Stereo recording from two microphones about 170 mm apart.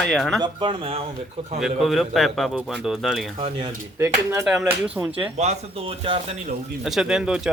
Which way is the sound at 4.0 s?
10° right (ahead or behind).